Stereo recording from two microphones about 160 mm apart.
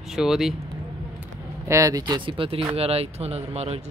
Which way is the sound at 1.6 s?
20° right (ahead or behind).